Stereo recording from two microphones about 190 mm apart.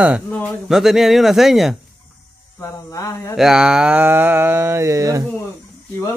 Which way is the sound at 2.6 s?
15° left (ahead or behind).